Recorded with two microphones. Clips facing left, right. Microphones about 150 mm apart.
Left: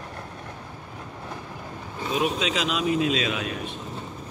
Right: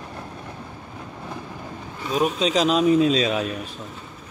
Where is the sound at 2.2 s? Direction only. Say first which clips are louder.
Right 6 dB; 35° right (ahead or behind).